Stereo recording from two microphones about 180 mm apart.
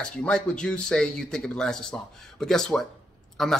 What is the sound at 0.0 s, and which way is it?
Speech, 5° left (ahead or behind).